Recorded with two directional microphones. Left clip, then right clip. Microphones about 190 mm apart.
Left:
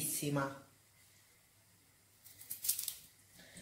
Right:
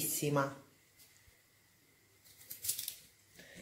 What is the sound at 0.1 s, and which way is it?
Speech, 25° right (ahead or behind).